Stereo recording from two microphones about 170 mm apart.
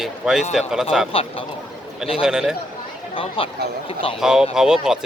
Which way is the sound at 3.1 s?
30° left (ahead or behind).